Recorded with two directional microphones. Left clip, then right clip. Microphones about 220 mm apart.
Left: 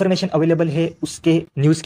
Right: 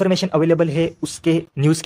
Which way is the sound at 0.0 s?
10° right (ahead or behind).